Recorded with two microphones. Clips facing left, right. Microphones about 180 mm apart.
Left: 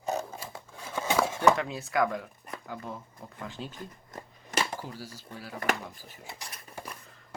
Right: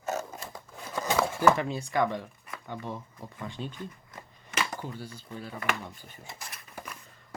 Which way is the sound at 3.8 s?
40° left (ahead or behind).